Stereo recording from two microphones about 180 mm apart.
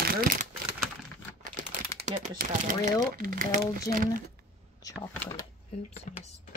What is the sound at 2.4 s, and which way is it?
Speech, 45° right (ahead or behind).